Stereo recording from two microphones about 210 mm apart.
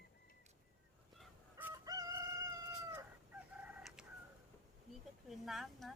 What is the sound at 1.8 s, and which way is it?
Crowing, 15° right (ahead or behind).